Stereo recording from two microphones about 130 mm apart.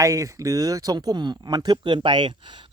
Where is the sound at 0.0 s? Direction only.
25° right (ahead or behind).